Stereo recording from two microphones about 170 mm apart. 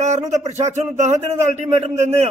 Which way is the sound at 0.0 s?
45° right (ahead or behind).